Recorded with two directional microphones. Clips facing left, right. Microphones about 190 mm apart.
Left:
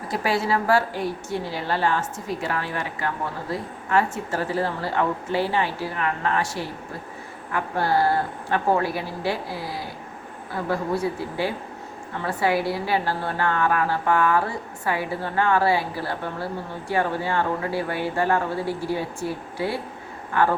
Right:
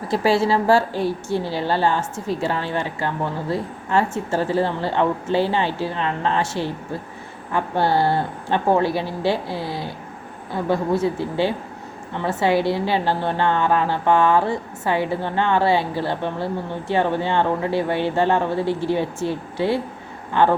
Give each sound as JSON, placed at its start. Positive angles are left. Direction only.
{"t": 0.1, "sound": "a woman's voice", "side_deg": -30}